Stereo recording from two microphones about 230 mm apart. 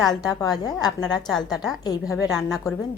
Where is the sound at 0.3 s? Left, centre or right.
Centre.